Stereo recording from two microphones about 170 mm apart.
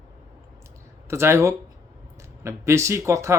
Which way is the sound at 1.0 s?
15° right (ahead or behind).